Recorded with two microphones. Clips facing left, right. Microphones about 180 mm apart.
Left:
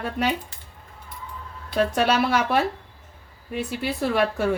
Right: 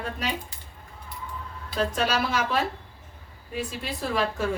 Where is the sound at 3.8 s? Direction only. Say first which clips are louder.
Left 6 dB; 65° left (ahead or behind).